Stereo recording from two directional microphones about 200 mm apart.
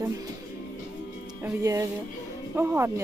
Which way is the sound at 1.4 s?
15° right (ahead or behind).